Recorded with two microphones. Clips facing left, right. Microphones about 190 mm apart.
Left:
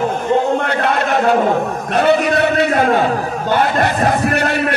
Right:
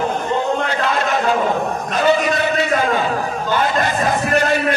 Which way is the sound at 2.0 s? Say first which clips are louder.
Left 3 dB; 60° left (ahead or behind).